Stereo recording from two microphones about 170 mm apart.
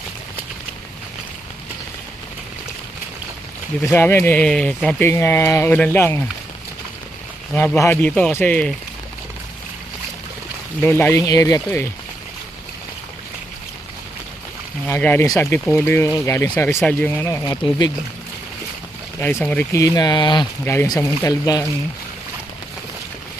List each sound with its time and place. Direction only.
3.9 s speech: 10° left (ahead or behind)
7.5 s speech: 10° left (ahead or behind)
10.8 s speech: 15° left (ahead or behind)
14.8 s speech: 10° left (ahead or behind)
19.4 s speech: 5° left (ahead or behind)
19.7 s speech: 20° left (ahead or behind)